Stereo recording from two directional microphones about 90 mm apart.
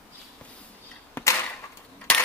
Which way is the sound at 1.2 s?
25° left (ahead or behind).